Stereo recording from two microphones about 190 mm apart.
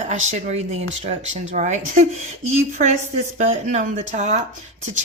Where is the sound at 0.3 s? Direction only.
35° right (ahead or behind).